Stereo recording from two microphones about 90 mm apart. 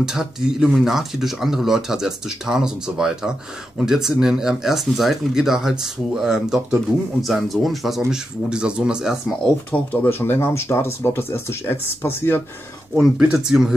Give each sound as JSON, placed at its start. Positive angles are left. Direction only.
{"t": 0.0, "sound": "speech", "side_deg": -5}
{"t": 9.7, "sound": "speech", "side_deg": 25}
{"t": 13.2, "sound": "speech", "side_deg": -10}